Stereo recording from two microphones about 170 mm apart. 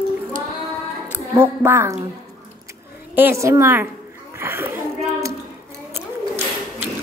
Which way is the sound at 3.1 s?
15° right (ahead or behind).